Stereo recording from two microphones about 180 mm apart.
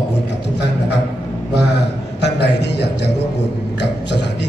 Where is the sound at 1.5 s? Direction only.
70° left (ahead or behind).